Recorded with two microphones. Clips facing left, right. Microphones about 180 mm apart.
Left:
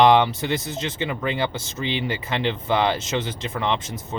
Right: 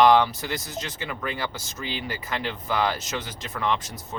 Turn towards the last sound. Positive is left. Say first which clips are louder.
# left 2 dB
turn(degrees=25)  # may be behind; listen again after turning